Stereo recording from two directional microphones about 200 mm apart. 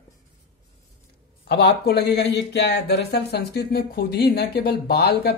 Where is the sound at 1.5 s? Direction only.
55° left (ahead or behind).